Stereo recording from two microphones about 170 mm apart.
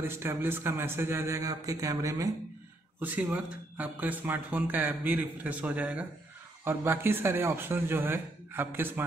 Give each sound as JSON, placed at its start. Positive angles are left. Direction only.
{"t": 0.0, "sound": "speech", "side_deg": -15}